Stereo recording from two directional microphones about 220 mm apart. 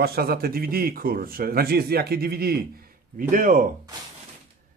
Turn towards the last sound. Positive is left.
turn(degrees=-40)  # may be behind; listen again after turning